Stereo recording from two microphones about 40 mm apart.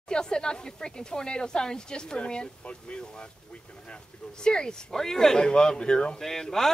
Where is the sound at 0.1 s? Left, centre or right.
Centre.